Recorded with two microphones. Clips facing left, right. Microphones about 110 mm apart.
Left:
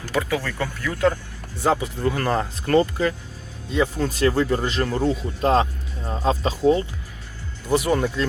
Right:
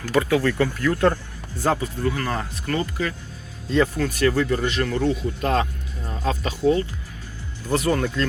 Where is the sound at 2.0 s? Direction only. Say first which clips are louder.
Left 4 dB; 30° left (ahead or behind).